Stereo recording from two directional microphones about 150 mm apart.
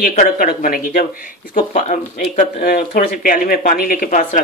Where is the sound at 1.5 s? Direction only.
60° left (ahead or behind).